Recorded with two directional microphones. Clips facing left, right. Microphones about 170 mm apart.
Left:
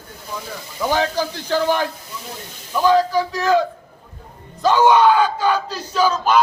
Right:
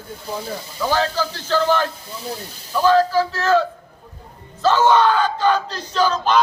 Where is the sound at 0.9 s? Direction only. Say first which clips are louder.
Left 1 dB; 15° left (ahead or behind).